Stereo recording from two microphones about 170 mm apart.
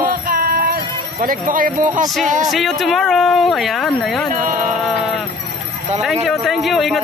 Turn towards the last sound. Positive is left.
turn(degrees=0)  # may be behind; listen again after turning